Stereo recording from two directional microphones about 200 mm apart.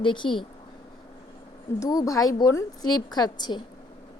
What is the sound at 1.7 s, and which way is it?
A woman's voice, 15° left (ahead or behind).